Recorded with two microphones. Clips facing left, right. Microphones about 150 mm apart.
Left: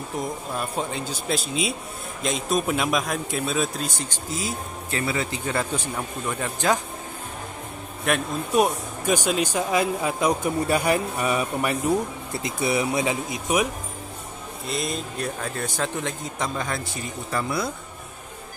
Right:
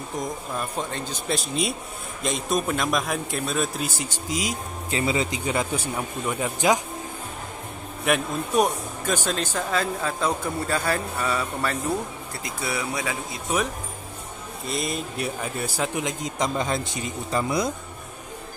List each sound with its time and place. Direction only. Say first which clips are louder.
0.2 s speech: left 1 dB; 10° left (ahead or behind); by 6.8 s 10° right (ahead or behind)
8.0 s speech: right 1 dB; centre (ahead or behind)
9.0 s a man's voice: left 4 dB; 10° left (ahead or behind)
14.7 s speech: even; centre (ahead or behind); by 17.7 s 20° right (ahead or behind)